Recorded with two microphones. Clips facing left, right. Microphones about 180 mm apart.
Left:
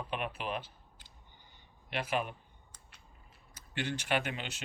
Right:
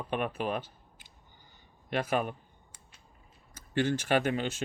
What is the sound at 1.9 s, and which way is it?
Speech, 50° right (ahead or behind).